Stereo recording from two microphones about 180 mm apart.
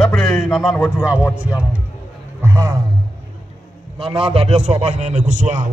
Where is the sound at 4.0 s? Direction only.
30° right (ahead or behind).